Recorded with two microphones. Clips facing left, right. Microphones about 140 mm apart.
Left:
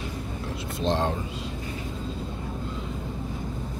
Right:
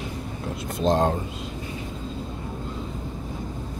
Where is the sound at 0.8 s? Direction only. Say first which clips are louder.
Right 5 dB; 45° right (ahead or behind).